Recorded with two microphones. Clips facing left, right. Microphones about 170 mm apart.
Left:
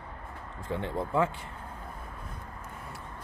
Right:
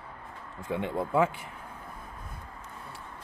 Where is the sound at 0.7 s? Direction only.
15° right (ahead or behind).